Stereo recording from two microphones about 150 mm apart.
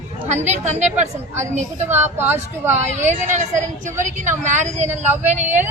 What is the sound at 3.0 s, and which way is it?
Speech, 55° right (ahead or behind).